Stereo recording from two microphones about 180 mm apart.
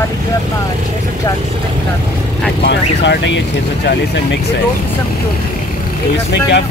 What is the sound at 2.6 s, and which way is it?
Speech, 75° left (ahead or behind).